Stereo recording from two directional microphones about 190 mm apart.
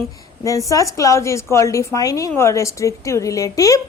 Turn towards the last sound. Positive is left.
turn(degrees=20)  # may be behind; listen again after turning